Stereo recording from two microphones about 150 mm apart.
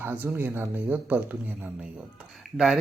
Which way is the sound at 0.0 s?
15° right (ahead or behind).